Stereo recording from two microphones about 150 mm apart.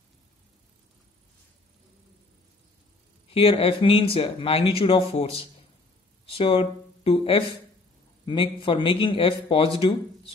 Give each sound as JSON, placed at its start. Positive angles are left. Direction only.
{"t": 3.3, "sound": "speech", "side_deg": 40}